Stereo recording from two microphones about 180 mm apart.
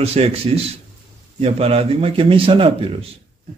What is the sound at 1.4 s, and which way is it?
A man's voice, 35° right (ahead or behind).